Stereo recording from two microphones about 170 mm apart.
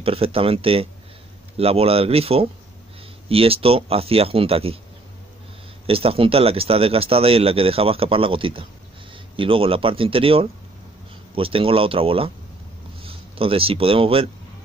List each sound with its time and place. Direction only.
0.0 s speech: 35° right (ahead or behind)
5.9 s speech: 35° right (ahead or behind)